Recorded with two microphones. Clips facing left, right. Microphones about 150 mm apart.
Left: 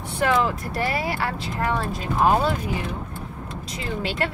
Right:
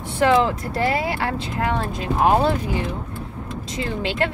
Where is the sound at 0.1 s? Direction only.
25° right (ahead or behind).